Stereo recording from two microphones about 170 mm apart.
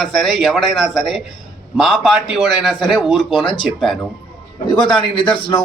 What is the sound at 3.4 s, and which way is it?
Speech, 30° left (ahead or behind).